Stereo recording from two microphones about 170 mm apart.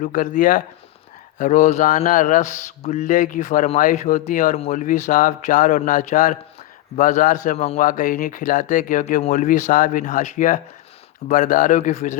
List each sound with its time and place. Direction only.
0.0 s speech: 50° left (ahead or behind)